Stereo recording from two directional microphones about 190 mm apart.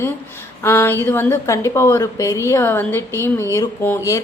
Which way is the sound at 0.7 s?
10° left (ahead or behind).